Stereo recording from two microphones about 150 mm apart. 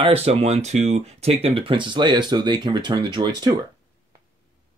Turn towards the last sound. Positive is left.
turn(degrees=-30)  # may be behind; listen again after turning